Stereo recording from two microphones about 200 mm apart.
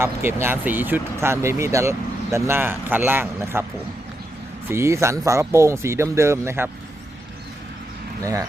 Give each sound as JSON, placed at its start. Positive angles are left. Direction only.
{"t": 0.0, "sound": "speech", "side_deg": -10}
{"t": 4.7, "sound": "speech", "side_deg": -15}
{"t": 8.2, "sound": "speech", "side_deg": -15}